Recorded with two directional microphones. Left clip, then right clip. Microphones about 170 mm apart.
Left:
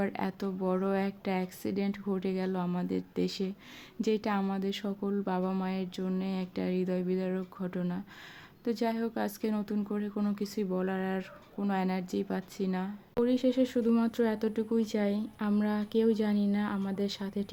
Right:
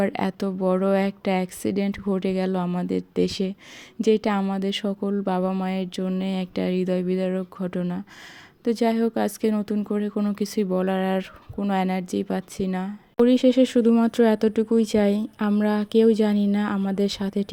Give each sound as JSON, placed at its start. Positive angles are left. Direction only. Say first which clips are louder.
{"t": 0.0, "sound": "speech", "louder": "right 9 dB", "side_deg": -45}